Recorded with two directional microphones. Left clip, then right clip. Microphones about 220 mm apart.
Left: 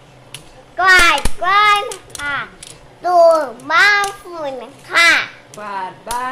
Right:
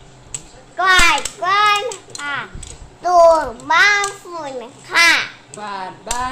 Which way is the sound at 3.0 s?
20° left (ahead or behind).